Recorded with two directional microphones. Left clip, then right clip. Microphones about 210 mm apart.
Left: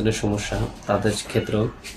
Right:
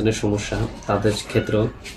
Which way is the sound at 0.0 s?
5° left (ahead or behind).